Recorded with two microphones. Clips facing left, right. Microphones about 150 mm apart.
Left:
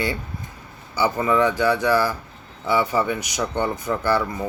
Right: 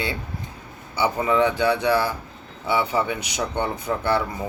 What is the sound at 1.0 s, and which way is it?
Speech, 10° right (ahead or behind).